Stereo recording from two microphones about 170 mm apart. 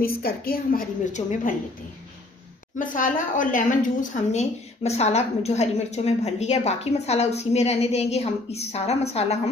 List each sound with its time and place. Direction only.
0.0 s a woman's voice: 65° left (ahead or behind)
2.8 s a woman's voice: 50° left (ahead or behind)